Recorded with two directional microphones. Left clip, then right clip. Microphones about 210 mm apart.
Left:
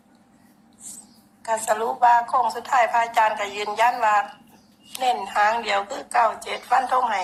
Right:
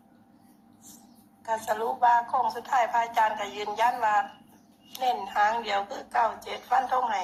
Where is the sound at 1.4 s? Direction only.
15° left (ahead or behind).